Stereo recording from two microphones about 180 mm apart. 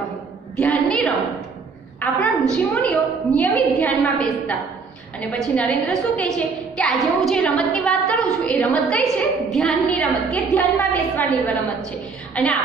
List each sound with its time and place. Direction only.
0.6 s a woman's voice: 10° left (ahead or behind)
2.0 s a sound: 10° left (ahead or behind)
2.5 s a woman's voice: 5° left (ahead or behind)
5.4 s a woman's voice: 5° left (ahead or behind)
12.4 s a woman's voice: 5° left (ahead or behind)